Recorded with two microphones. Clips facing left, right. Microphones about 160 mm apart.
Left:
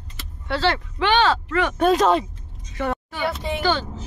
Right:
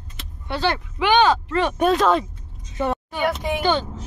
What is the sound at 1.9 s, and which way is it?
Speech, centre (ahead or behind).